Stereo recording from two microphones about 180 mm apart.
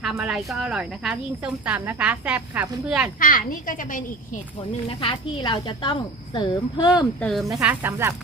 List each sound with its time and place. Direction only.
0.0 s speech: 5° right (ahead or behind)
3.2 s a child's voice: 50° left (ahead or behind)
4.9 s speech: 30° left (ahead or behind)
7.2 s speech: 5° left (ahead or behind)
7.6 s speech: 10° right (ahead or behind)